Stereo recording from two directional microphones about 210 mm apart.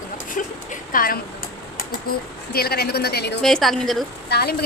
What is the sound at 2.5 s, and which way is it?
Speech, 50° left (ahead or behind).